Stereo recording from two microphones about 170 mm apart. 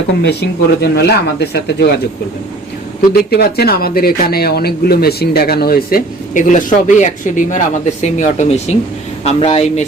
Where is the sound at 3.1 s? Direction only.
65° left (ahead or behind).